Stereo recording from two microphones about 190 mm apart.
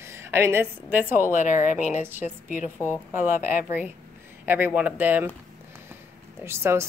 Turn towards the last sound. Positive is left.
turn(degrees=-15)  # may be behind; listen again after turning